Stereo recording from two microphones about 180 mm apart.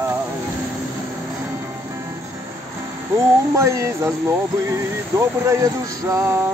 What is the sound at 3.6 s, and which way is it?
Speech, 15° right (ahead or behind).